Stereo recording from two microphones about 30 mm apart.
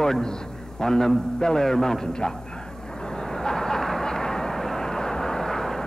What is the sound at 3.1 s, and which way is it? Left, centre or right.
Vehicle, left.